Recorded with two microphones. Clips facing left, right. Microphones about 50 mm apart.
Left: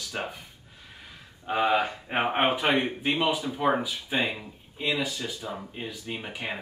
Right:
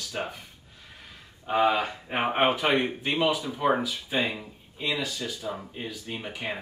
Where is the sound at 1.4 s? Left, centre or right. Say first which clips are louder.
Right 1 dB; centre.